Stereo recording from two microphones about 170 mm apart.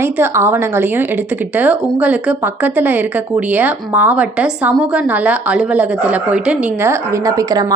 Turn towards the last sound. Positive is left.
turn(degrees=-20)  # may be behind; listen again after turning